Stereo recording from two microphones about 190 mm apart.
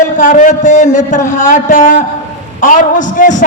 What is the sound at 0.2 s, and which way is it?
Speech, 40° left (ahead or behind).